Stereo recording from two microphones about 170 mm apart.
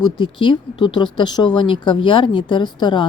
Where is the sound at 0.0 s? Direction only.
30° left (ahead or behind).